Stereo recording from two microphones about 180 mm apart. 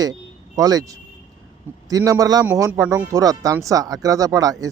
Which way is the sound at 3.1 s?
20° right (ahead or behind).